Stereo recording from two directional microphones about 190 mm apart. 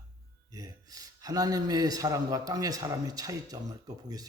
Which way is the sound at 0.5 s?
20° right (ahead or behind).